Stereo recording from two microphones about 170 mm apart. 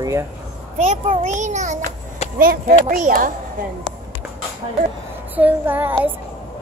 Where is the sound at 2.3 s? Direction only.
60° right (ahead or behind).